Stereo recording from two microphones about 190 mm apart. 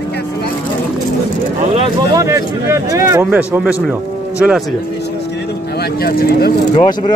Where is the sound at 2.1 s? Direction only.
15° right (ahead or behind).